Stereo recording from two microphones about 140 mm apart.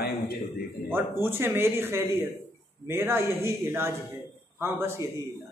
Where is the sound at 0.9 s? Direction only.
15° right (ahead or behind).